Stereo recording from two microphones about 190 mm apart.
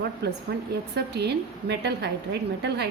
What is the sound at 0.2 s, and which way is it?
A woman's voice, 60° right (ahead or behind).